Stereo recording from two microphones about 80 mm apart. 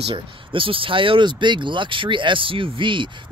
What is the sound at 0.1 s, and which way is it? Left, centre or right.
Speech, right.